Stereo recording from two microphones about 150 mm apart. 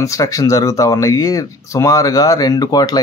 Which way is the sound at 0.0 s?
20° left (ahead or behind).